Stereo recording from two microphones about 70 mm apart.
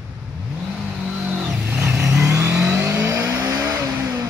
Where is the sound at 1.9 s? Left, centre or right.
Centre.